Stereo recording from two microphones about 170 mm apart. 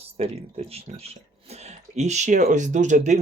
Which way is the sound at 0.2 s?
35° right (ahead or behind).